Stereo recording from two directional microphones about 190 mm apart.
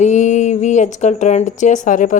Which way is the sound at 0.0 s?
40° left (ahead or behind).